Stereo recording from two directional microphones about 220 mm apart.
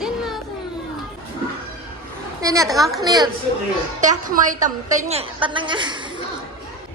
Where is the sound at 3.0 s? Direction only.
15° right (ahead or behind).